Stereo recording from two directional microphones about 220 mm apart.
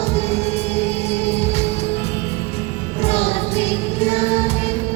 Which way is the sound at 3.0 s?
25° left (ahead or behind).